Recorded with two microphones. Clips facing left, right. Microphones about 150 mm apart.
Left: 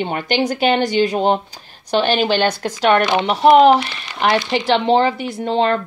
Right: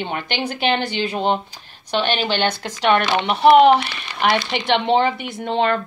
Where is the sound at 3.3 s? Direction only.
Centre (ahead or behind).